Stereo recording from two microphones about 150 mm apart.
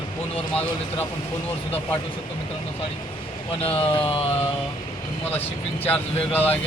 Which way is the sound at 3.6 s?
40° left (ahead or behind).